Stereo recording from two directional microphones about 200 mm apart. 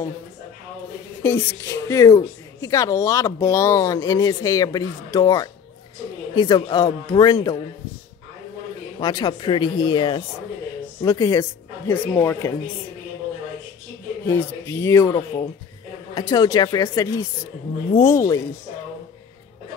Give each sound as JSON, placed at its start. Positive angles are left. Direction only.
{"t": 1.2, "sound": "a woman's voice", "side_deg": 15}
{"t": 9.0, "sound": "a man's voice", "side_deg": 20}
{"t": 14.2, "sound": "a woman's voice", "side_deg": 15}